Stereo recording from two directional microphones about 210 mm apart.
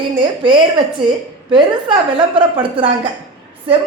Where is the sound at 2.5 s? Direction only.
25° right (ahead or behind).